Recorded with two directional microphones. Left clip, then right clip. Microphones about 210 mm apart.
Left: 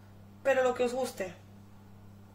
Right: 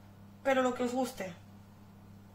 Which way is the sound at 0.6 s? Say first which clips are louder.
Left 3 dB; 30° left (ahead or behind).